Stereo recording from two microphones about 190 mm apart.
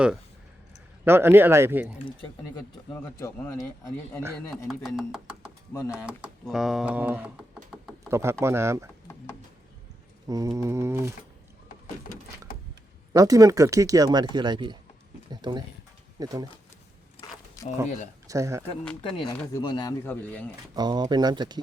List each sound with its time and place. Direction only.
1.0 s mantra: 10° right (ahead or behind)
2.9 s a man's voice: 15° left (ahead or behind)
4.7 s speech: 5° right (ahead or behind)
8.1 s mantra: 15° right (ahead or behind)
10.2 s mantra: 15° right (ahead or behind)
13.1 s speech: 20° right (ahead or behind)
18.3 s mantra: 15° right (ahead or behind)
19.0 s speech: 25° left (ahead or behind)
20.1 s a man's voice: 10° left (ahead or behind)
20.7 s speech: 20° right (ahead or behind)